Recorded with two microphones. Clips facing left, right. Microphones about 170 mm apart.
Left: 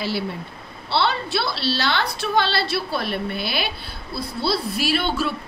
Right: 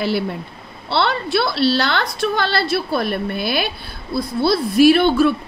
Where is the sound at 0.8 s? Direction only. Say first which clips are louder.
Right 3 dB; 55° right (ahead or behind).